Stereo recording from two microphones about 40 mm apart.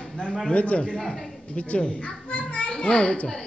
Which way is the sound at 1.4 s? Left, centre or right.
Left.